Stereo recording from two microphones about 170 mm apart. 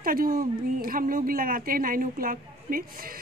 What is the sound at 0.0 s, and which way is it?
Speech, 60° right (ahead or behind).